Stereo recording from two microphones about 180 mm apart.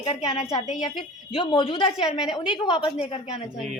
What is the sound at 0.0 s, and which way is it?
A woman's voice, 30° left (ahead or behind).